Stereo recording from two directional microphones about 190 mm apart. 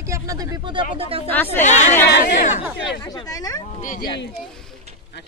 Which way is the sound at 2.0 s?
60° left (ahead or behind).